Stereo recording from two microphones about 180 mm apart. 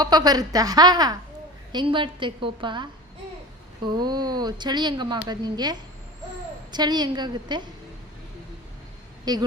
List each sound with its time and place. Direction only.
0.0 s a woman's voice: 20° right (ahead or behind)
3.9 s a woman's voice: 25° right (ahead or behind)
9.3 s a woman's voice: 20° right (ahead or behind)